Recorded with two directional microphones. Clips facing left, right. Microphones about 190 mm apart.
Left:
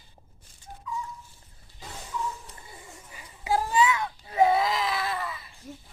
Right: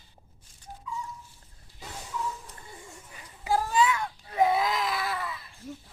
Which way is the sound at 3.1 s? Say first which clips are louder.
Left 1 dB; 5° left (ahead or behind).